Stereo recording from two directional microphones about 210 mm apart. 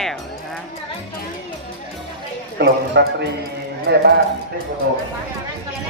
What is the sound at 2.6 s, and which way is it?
Speech, 55° right (ahead or behind).